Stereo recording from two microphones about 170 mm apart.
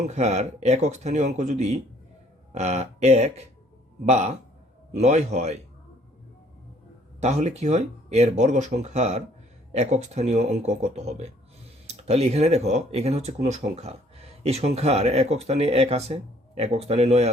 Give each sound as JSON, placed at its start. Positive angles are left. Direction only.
{"t": 0.0, "sound": "speech", "side_deg": -40}
{"t": 7.2, "sound": "speech", "side_deg": -40}